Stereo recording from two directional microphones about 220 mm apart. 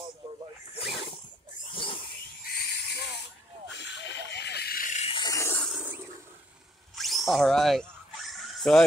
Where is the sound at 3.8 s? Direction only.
50° left (ahead or behind); by 5.7 s 10° left (ahead or behind).